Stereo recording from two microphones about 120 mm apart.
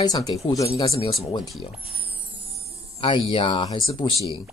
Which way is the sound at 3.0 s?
45° left (ahead or behind).